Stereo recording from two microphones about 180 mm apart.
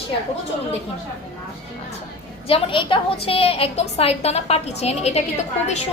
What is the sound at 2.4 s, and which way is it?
A woman's voice, 30° left (ahead or behind).